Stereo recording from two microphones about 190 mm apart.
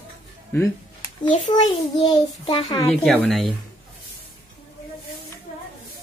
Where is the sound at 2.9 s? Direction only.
Centre (ahead or behind).